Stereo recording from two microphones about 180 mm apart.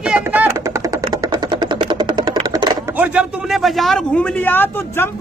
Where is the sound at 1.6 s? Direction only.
25° right (ahead or behind).